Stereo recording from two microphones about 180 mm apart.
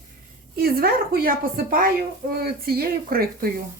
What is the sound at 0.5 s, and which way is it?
A woman's voice, 55° right (ahead or behind).